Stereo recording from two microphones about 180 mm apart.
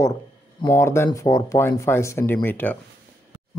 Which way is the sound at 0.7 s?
15° left (ahead or behind).